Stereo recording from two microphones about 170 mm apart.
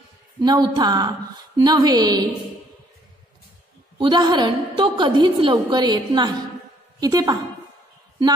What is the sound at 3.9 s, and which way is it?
A woman's voice, 25° right (ahead or behind).